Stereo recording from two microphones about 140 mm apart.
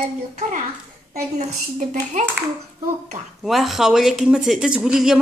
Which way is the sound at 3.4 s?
Centre (ahead or behind).